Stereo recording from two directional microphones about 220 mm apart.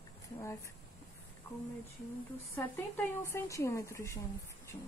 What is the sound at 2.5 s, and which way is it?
Speech, 10° left (ahead or behind).